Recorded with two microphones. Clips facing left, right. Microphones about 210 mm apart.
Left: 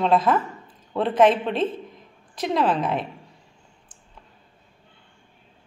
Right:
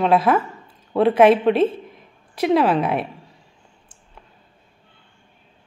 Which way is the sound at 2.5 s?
10° right (ahead or behind).